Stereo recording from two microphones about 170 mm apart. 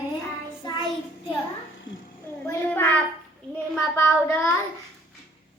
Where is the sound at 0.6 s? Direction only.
25° left (ahead or behind).